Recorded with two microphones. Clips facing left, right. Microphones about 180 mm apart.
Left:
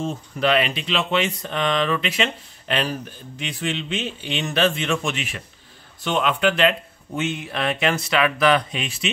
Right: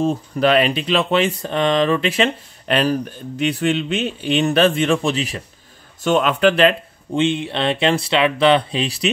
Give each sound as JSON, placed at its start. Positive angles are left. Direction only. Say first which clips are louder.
{"t": 0.0, "sound": "speech", "louder": "right 6 dB", "side_deg": -40}
{"t": 4.8, "sound": "a man's voice", "louder": "right 6 dB", "side_deg": -35}